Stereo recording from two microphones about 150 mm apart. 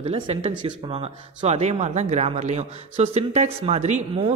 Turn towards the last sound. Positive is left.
turn(degrees=-50)  # may be behind; listen again after turning